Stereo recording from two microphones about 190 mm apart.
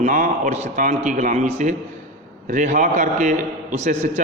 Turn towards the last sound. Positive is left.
turn(degrees=-40)  # may be behind; listen again after turning